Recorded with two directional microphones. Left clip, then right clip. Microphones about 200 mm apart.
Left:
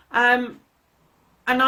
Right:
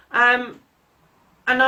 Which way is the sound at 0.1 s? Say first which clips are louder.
Right 2 dB; 45° left (ahead or behind).